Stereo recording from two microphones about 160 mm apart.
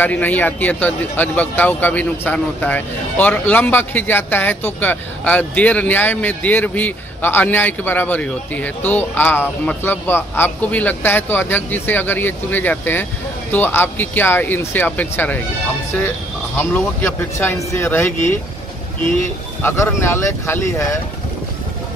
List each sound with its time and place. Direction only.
0.0 s speech: 10° left (ahead or behind)
16.5 s speech: 10° left (ahead or behind)
19.6 s speech: 15° left (ahead or behind)